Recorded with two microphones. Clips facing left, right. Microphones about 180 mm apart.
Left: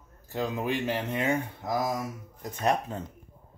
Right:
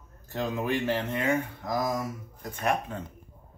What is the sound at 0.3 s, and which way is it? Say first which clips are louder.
Speech: right 1 dB; 10° left (ahead or behind).